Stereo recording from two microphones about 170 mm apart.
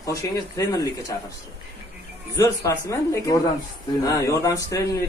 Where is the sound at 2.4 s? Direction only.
20° left (ahead or behind).